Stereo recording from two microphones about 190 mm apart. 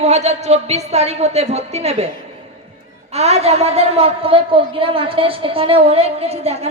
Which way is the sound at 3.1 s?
35° right (ahead or behind).